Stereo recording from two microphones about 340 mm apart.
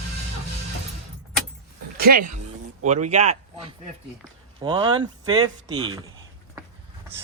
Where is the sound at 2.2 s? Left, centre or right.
Right.